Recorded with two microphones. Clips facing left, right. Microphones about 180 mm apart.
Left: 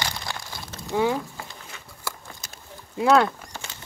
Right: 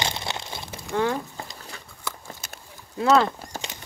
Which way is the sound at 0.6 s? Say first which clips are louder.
Even; 15° right (ahead or behind).